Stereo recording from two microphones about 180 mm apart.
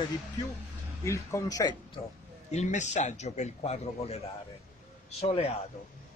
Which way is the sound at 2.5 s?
40° left (ahead or behind).